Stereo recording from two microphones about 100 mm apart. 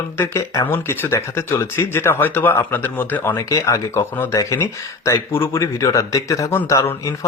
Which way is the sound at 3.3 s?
35° left (ahead or behind).